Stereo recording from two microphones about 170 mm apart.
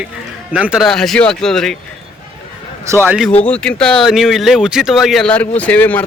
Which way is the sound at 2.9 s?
15° right (ahead or behind).